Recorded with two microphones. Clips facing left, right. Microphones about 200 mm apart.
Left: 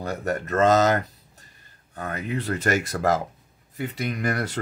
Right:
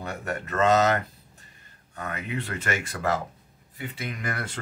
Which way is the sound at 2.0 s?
35° left (ahead or behind).